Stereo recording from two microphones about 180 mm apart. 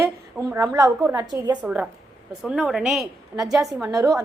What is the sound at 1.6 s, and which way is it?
A woman's voice, 5° right (ahead or behind).